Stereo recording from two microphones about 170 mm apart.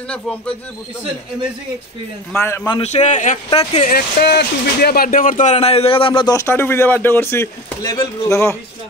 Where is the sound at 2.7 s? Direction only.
40° left (ahead or behind).